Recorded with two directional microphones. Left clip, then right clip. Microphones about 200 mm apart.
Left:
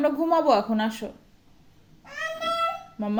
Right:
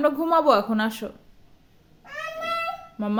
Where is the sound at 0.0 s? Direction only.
30° right (ahead or behind).